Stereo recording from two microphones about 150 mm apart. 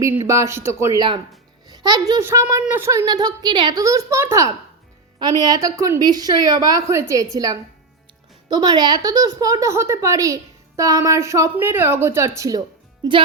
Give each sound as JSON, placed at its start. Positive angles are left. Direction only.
{"t": 0.3, "sound": "a child's voice", "side_deg": -20}